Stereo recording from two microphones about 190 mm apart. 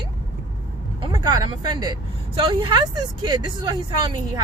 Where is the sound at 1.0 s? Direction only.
25° right (ahead or behind).